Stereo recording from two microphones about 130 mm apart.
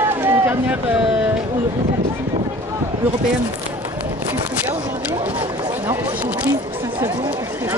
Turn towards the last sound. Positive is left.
turn(degrees=-10)  # may be behind; listen again after turning